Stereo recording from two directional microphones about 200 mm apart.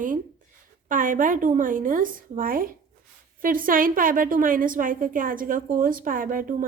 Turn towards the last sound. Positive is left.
turn(degrees=-45)  # may be behind; listen again after turning